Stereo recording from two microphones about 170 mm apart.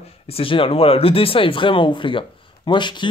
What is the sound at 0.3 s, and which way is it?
Speech, 30° left (ahead or behind).